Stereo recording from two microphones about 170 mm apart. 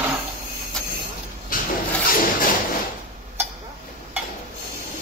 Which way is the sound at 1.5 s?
55° left (ahead or behind).